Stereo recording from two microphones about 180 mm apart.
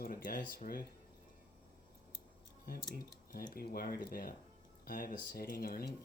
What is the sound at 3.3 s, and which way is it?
Speech, 55° left (ahead or behind).